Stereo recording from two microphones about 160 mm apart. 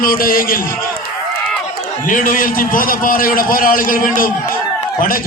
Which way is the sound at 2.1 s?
60° left (ahead or behind).